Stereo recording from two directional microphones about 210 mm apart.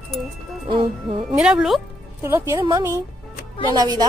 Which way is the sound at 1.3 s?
5° right (ahead or behind).